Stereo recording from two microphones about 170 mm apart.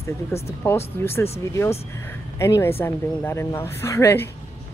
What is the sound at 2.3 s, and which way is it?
Speech, 15° left (ahead or behind).